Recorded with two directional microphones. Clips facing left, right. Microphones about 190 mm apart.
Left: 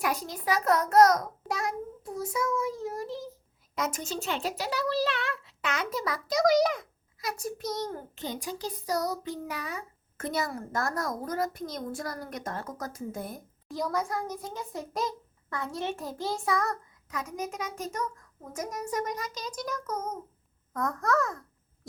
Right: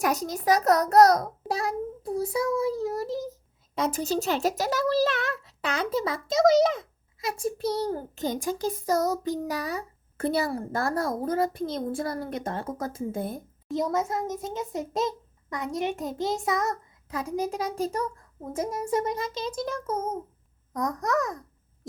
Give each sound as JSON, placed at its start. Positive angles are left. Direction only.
{"t": 0.0, "sound": "a child's voice", "side_deg": -45}